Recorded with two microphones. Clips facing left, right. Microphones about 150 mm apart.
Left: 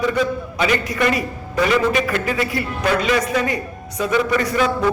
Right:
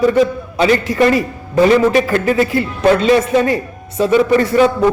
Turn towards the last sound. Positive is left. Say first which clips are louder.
# right 7 dB
turn(degrees=-30)  # may be behind; listen again after turning